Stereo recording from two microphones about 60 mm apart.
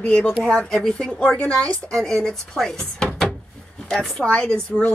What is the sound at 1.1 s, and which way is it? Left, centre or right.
A woman's voice, left.